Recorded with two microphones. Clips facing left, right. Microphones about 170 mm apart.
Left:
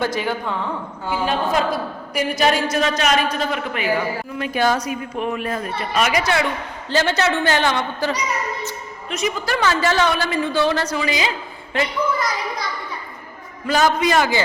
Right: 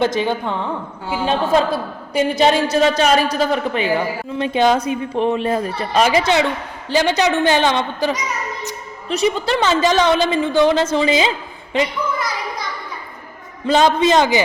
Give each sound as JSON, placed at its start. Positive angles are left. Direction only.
{"t": 0.0, "sound": "a woman's voice", "side_deg": -20}
{"t": 9.0, "sound": "a woman's voice", "side_deg": -30}
{"t": 13.7, "sound": "a woman's voice", "side_deg": -25}